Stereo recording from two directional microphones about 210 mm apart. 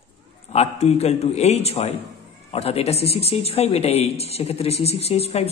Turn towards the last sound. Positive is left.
turn(degrees=30)  # may be behind; listen again after turning